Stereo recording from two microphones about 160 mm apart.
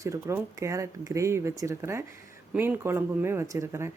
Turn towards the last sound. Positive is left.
turn(degrees=-15)  # may be behind; listen again after turning